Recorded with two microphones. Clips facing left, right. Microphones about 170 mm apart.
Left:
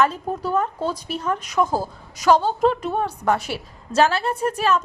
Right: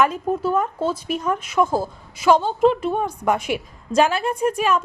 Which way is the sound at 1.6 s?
10° left (ahead or behind).